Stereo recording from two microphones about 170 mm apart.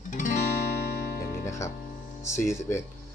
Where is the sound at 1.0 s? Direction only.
65° left (ahead or behind).